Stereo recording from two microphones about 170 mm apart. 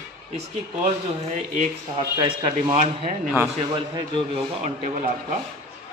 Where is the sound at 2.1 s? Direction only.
25° right (ahead or behind).